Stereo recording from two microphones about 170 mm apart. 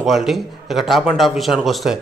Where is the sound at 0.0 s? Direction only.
Centre (ahead or behind).